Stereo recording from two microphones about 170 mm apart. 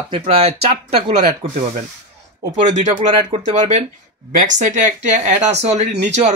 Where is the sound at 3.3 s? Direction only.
45° right (ahead or behind).